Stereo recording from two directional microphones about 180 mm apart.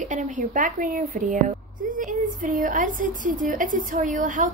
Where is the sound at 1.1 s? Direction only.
45° right (ahead or behind).